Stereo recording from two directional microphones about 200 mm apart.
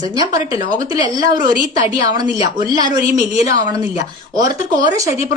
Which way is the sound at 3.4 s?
15° right (ahead or behind).